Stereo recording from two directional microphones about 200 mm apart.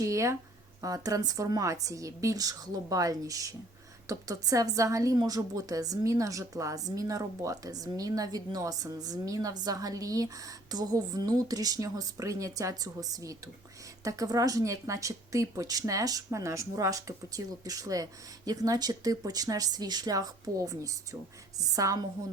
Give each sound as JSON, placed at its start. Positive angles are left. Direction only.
{"t": 0.0, "sound": "a woman's voice", "side_deg": -15}